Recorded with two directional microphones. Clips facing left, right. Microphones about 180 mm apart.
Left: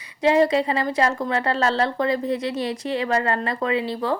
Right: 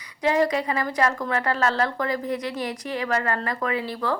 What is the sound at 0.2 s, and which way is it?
A woman's voice, 25° left (ahead or behind).